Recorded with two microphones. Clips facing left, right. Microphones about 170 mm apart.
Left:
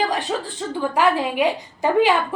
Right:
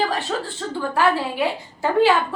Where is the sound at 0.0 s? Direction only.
15° left (ahead or behind).